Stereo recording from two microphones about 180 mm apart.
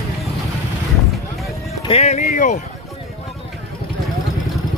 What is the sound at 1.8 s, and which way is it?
Speech, 35° left (ahead or behind).